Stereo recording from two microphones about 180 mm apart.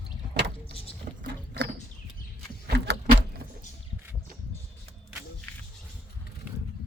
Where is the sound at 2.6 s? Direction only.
65° right (ahead or behind).